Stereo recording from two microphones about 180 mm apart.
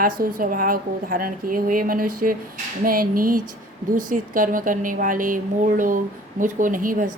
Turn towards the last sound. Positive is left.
turn(degrees=-50)  # may be behind; listen again after turning